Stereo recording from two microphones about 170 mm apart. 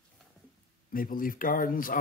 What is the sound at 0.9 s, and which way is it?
Speech, 55° left (ahead or behind).